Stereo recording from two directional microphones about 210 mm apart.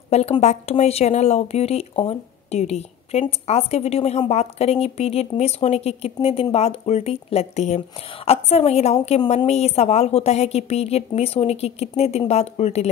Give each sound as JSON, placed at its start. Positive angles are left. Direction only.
{"t": 0.1, "sound": "speech", "side_deg": 30}